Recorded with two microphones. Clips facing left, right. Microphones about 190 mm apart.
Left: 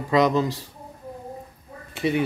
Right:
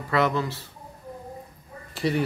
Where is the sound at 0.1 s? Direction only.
15° left (ahead or behind).